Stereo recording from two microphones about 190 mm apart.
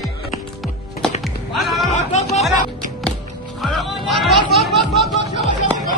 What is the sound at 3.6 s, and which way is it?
Speech, centre (ahead or behind).